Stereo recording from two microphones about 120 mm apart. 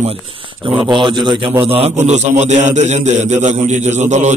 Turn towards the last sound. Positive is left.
turn(degrees=-80)